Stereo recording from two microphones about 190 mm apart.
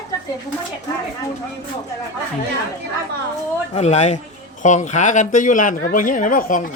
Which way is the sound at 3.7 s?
35° left (ahead or behind).